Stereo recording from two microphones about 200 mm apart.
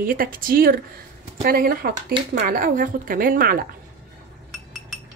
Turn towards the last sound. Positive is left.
turn(degrees=-45)  # may be behind; listen again after turning